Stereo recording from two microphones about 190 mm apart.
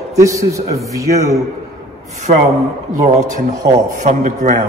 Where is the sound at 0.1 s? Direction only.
15° right (ahead or behind).